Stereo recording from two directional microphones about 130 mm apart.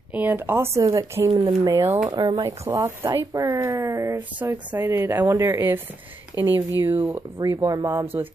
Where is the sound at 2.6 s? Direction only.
20° right (ahead or behind).